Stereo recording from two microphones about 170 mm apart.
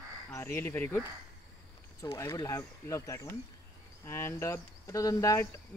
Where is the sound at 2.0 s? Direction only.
15° left (ahead or behind).